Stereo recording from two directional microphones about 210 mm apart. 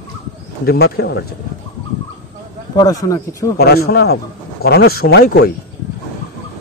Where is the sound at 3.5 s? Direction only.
50° left (ahead or behind).